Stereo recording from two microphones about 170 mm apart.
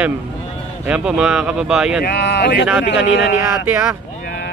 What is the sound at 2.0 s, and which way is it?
Speech, 80° left.